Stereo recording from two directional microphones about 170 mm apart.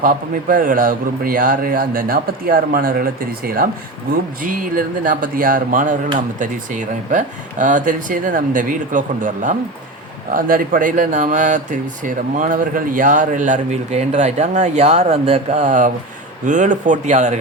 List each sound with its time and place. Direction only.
0.0 s a man's voice: 55° right (ahead or behind)